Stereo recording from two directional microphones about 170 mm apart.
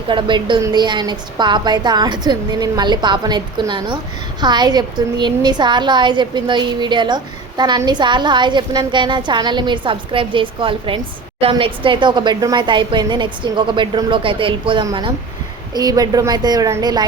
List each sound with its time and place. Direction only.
0.1 s a woman's voice: 30° right (ahead or behind)